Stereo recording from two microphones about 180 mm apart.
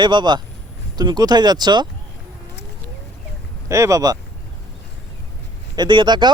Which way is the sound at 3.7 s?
15° right (ahead or behind).